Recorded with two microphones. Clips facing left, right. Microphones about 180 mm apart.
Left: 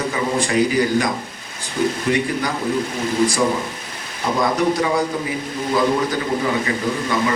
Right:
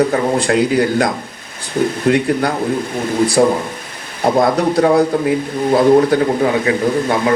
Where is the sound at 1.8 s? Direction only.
50° right (ahead or behind).